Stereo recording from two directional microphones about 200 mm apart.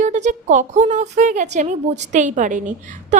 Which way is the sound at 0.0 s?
35° right (ahead or behind).